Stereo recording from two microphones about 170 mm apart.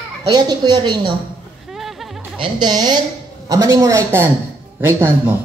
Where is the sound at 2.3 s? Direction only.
25° right (ahead or behind); by 5.3 s 10° right (ahead or behind).